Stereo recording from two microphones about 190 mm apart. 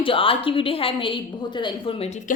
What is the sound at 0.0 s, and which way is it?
A woman's voice, 30° left (ahead or behind).